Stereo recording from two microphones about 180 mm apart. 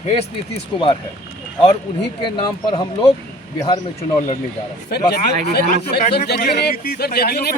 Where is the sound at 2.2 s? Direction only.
25° left (ahead or behind).